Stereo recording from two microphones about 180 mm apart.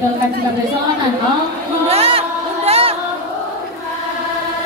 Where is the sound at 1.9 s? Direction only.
35° right (ahead or behind).